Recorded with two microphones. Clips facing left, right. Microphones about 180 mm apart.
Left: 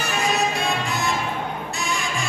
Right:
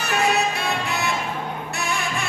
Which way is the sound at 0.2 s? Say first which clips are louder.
Right 1 dB; 65° right (ahead or behind).